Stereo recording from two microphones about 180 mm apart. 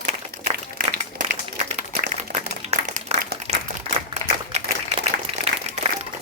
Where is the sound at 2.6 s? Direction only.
35° right (ahead or behind).